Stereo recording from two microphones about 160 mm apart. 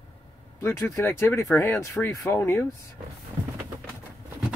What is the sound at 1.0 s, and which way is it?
Speech, 15° left (ahead or behind).